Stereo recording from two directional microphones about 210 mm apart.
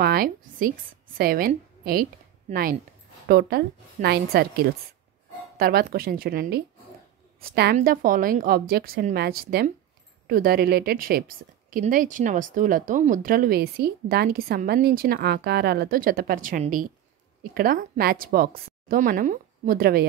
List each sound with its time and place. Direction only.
0.0 s a woman's voice: 45° right (ahead or behind)